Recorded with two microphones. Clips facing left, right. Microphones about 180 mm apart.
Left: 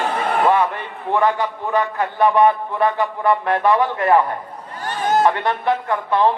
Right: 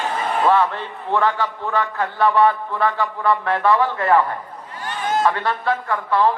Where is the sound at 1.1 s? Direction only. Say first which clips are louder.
Left 2 dB; 15° left (ahead or behind).